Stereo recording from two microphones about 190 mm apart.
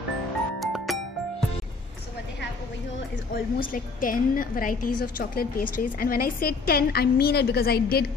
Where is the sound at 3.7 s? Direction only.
45° left (ahead or behind).